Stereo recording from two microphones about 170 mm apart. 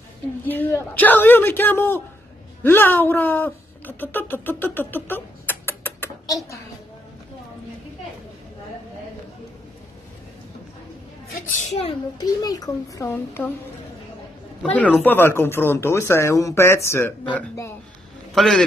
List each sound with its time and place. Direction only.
0.5 s speech: 15° left (ahead or behind)
11.7 s a child's voice: 35° left (ahead or behind)
12.2 s a child's voice: 20° left (ahead or behind)
14.6 s a man's voice: 5° left (ahead or behind)